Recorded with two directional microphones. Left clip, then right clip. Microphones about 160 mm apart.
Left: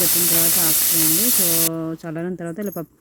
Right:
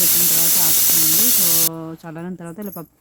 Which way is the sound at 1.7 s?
15° left (ahead or behind).